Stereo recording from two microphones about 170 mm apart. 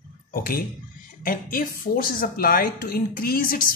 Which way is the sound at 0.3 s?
60° left (ahead or behind).